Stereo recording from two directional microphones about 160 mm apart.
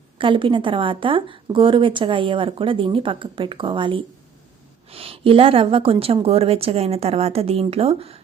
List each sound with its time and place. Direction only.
0.2 s a woman's voice: 30° right (ahead or behind)